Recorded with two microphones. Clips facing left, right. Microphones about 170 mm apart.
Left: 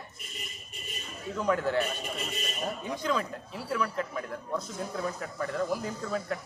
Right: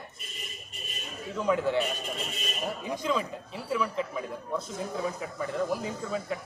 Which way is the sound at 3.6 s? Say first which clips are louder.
Right 1 dB; 5° right (ahead or behind).